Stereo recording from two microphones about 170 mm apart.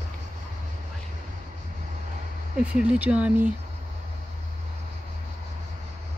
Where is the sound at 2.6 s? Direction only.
5° right (ahead or behind).